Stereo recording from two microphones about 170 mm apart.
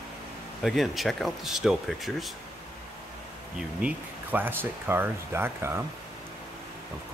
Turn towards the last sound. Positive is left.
turn(degrees=-15)  # may be behind; listen again after turning